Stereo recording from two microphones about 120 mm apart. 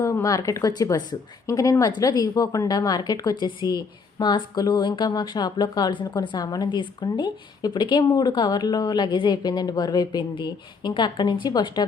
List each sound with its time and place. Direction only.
0.0 s a woman's voice: 25° left (ahead or behind)